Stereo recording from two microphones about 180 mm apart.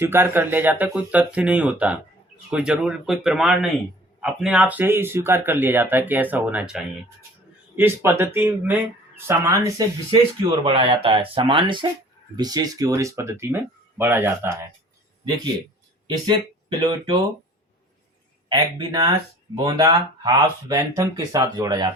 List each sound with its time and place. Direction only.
0.0 s speech: 10° right (ahead or behind)
10.1 s speech: 30° right (ahead or behind); by 14.7 s 15° right (ahead or behind)
16.0 s speech: 25° right (ahead or behind)
18.4 s speech: 25° right (ahead or behind)